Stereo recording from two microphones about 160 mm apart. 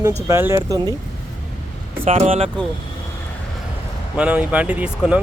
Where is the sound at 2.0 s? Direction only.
35° right (ahead or behind).